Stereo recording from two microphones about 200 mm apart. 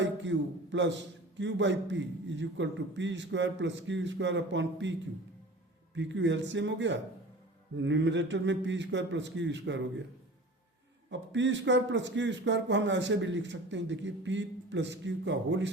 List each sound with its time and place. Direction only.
0.0 s a man's voice: 65° right (ahead or behind)
11.1 s a man's voice: 65° right (ahead or behind)